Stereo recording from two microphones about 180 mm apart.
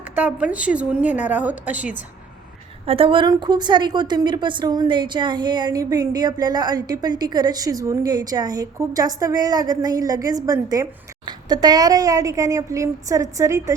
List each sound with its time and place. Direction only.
0.2 s a woman's voice: 5° right (ahead or behind)
2.8 s a woman's voice: 30° right (ahead or behind)